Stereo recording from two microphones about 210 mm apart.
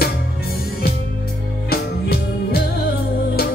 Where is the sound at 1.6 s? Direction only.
45° left (ahead or behind).